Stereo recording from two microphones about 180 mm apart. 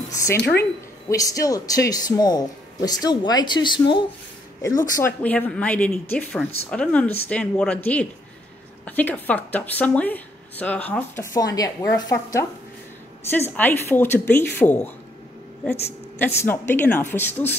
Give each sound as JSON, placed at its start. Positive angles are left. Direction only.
{"t": 0.1, "sound": "a sound", "side_deg": 20}
{"t": 1.0, "sound": "speech", "side_deg": 20}
{"t": 4.9, "sound": "a woman's voice", "side_deg": 10}
{"t": 11.3, "sound": "a woman's voice", "side_deg": 20}
{"t": 16.2, "sound": "a woman's voice", "side_deg": 10}